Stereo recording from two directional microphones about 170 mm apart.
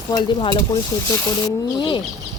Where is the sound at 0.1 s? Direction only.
25° left (ahead or behind).